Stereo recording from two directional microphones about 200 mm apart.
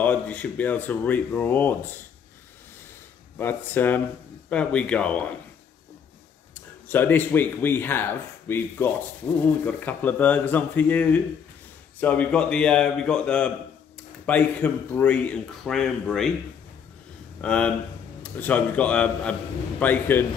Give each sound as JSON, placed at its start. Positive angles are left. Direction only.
{"t": 0.0, "sound": "speech", "side_deg": 10}
{"t": 3.3, "sound": "a man's voice", "side_deg": 10}
{"t": 6.9, "sound": "a man's voice", "side_deg": 10}
{"t": 17.4, "sound": "a man's voice", "side_deg": 5}